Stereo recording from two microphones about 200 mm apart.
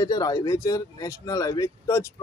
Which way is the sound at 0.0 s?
20° left (ahead or behind).